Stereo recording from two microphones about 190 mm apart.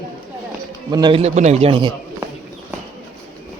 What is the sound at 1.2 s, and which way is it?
Speech, 35° right (ahead or behind).